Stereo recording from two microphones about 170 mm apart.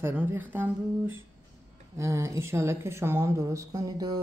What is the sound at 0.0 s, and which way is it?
A woman's voice, 10° right (ahead or behind).